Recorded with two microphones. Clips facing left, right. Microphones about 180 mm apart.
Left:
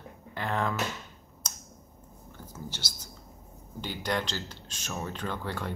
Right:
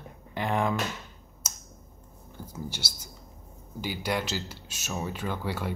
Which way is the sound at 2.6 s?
10° right (ahead or behind).